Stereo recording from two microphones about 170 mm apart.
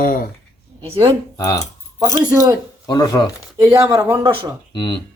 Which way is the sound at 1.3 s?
20° left (ahead or behind).